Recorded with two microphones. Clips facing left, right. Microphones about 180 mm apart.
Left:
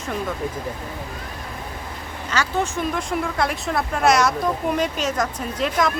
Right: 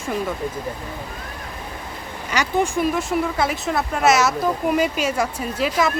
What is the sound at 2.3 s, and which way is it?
Speech, 15° right (ahead or behind).